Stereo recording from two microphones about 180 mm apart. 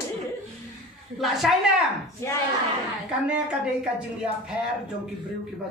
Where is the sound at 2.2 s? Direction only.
15° left (ahead or behind).